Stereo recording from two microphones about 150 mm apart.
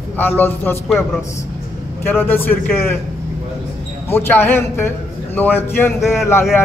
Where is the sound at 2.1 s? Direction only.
15° left (ahead or behind).